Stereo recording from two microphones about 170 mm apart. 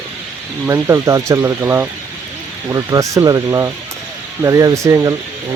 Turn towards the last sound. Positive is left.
turn(degrees=-15)  # may be behind; listen again after turning